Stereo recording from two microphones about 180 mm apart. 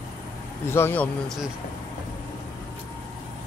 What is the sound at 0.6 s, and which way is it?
Speech, 15° left (ahead or behind).